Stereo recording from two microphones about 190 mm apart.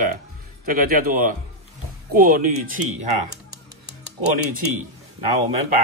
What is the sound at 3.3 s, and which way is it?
Music, 60° right (ahead or behind).